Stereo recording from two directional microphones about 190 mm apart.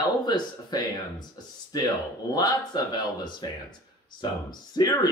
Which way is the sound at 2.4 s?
20° left (ahead or behind).